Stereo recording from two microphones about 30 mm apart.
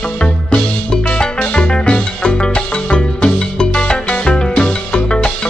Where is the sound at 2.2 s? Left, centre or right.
Left.